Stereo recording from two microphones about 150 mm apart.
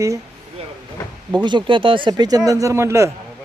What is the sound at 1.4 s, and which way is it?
Speech, 30° right (ahead or behind).